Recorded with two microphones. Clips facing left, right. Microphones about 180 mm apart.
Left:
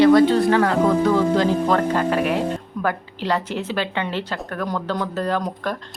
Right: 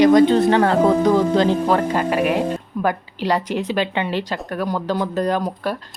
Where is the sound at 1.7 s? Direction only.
10° right (ahead or behind).